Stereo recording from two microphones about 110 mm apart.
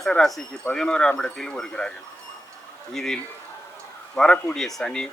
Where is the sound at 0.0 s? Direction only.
5° left (ahead or behind).